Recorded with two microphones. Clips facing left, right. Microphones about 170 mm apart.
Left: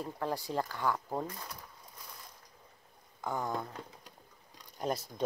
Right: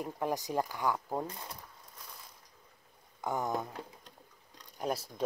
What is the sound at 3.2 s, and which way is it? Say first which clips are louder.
Speech: right 2 dB; 15° right (ahead or behind).